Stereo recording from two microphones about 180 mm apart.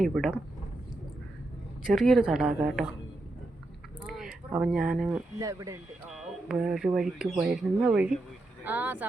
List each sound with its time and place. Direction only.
0.0 s speech: centre (ahead or behind)
1.9 s speech: centre (ahead or behind)
4.1 s speech: 5° right (ahead or behind)
5.4 s speech: 20° right (ahead or behind)
6.1 s speech: 5° right (ahead or behind)